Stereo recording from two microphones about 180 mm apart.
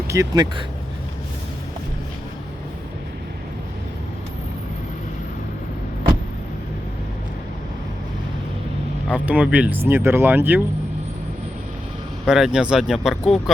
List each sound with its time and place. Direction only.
0.1 s speech: 20° right (ahead or behind)
9.2 s speech: 5° right (ahead or behind)
12.2 s speech: 5° right (ahead or behind)